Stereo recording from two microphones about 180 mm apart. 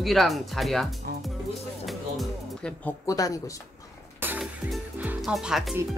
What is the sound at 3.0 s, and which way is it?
Speech, 20° left (ahead or behind).